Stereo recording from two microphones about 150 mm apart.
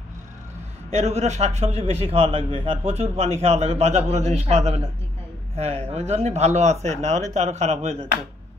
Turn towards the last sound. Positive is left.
turn(degrees=-50)  # may be behind; listen again after turning